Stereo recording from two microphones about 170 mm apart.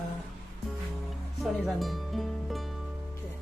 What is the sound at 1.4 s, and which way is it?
Music, centre (ahead or behind).